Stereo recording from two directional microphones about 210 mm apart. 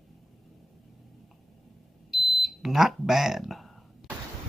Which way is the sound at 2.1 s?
Centre (ahead or behind).